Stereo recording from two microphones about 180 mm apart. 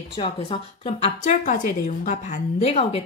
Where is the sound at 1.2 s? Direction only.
45° left (ahead or behind).